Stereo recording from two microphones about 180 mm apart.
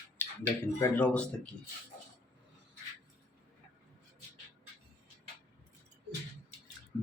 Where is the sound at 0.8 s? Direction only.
10° left (ahead or behind).